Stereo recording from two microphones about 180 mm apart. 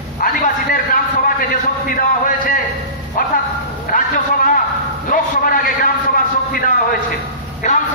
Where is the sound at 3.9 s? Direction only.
50° left (ahead or behind).